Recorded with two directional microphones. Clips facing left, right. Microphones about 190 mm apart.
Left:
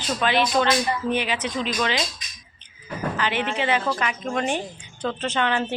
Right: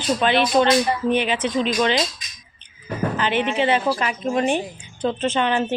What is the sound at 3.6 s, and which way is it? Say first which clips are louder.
Speech: right 4 dB; 25° right (ahead or behind).